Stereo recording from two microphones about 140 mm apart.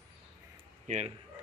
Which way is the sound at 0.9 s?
60° right (ahead or behind).